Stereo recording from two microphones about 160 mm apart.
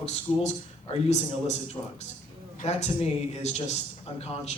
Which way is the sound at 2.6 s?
45° left (ahead or behind).